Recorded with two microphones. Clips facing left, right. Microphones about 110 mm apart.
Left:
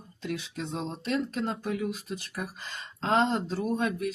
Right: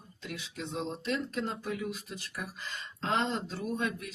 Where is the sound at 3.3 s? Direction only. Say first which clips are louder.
Left 6 dB; 35° left (ahead or behind).